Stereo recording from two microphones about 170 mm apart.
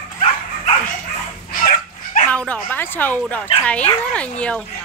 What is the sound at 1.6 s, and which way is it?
Dog, 50° left (ahead or behind).